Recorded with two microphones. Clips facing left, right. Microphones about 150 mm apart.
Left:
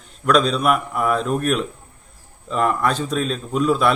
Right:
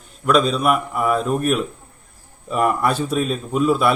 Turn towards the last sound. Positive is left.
turn(degrees=-5)  # may be behind; listen again after turning